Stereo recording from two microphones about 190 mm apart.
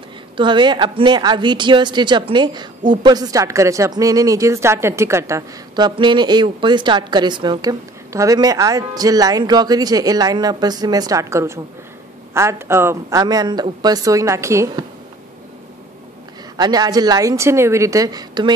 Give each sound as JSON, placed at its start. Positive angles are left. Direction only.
{"t": 0.4, "sound": "a woman's voice", "side_deg": -25}
{"t": 16.5, "sound": "a woman's voice", "side_deg": -20}